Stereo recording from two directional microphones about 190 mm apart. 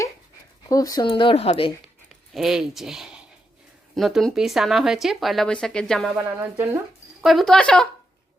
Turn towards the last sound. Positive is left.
turn(degrees=5)  # may be behind; listen again after turning